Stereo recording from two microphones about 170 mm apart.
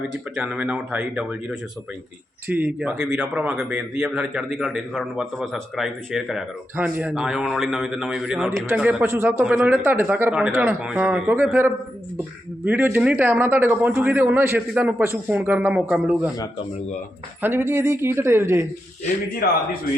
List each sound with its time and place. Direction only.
0.3 s speech: 10° right (ahead or behind)
2.5 s a man's voice: 10° right (ahead or behind)
17.4 s speech: 15° right (ahead or behind)
19.4 s speech: 60° left (ahead or behind)